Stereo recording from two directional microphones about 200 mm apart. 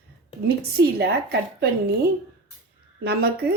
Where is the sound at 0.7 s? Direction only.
55° right (ahead or behind).